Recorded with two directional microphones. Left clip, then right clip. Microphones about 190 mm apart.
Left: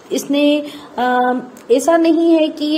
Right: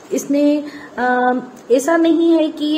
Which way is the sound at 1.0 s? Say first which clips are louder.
Left 1 dB; 25° left (ahead or behind).